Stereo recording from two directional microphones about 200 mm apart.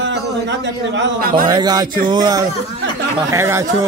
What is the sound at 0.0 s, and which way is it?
A man's voice, 65° right (ahead or behind).